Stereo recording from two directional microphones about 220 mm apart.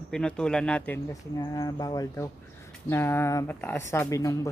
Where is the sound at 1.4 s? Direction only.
15° left (ahead or behind).